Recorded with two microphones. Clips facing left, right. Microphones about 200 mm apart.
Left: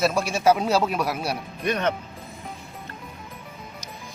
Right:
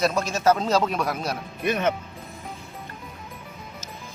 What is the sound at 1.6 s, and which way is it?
Speech, 5° right (ahead or behind).